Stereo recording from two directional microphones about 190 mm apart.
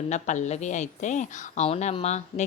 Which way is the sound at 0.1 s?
40° left (ahead or behind).